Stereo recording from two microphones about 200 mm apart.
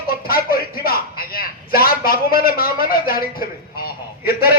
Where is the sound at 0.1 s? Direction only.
50° left (ahead or behind).